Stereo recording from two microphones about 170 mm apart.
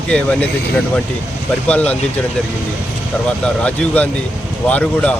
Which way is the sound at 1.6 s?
10° left (ahead or behind).